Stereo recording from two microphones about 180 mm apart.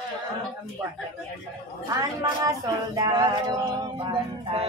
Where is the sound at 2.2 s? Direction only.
20° right (ahead or behind).